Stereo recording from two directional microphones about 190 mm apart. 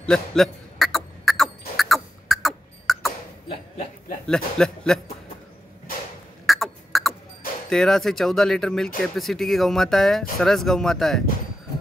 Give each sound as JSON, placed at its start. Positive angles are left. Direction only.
{"t": 0.0, "sound": "cough", "side_deg": 5}
{"t": 3.4, "sound": "a sound", "side_deg": 30}
{"t": 4.3, "sound": "speech", "side_deg": 5}
{"t": 6.4, "sound": "cough", "side_deg": 0}
{"t": 7.7, "sound": "speech", "side_deg": 0}